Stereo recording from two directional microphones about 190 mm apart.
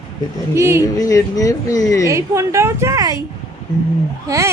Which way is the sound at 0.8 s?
15° left (ahead or behind).